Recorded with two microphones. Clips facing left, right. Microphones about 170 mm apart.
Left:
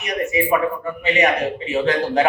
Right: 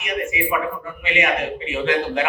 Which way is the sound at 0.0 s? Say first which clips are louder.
Left 4 dB; 35° left (ahead or behind).